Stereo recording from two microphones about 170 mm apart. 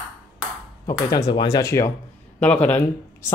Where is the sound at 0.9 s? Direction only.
20° left (ahead or behind).